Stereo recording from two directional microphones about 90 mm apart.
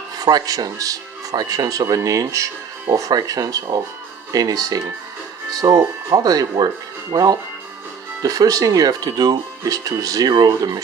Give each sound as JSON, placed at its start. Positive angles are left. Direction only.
{"t": 0.2, "sound": "speech", "side_deg": -45}